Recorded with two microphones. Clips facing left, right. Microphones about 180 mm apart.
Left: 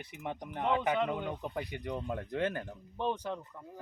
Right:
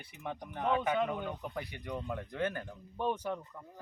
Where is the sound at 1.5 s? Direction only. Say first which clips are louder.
Left 3 dB; 20° left (ahead or behind).